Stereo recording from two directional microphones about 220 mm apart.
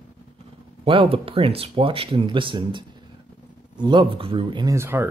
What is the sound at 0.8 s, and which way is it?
Speech, 25° right (ahead or behind).